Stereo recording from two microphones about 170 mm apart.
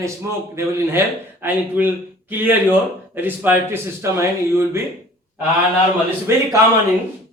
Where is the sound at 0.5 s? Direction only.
15° right (ahead or behind).